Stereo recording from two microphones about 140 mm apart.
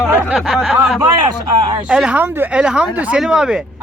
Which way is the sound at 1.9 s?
5° right (ahead or behind).